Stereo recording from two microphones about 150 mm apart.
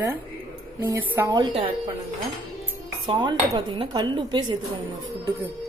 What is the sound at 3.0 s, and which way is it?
Speech, 30° right (ahead or behind).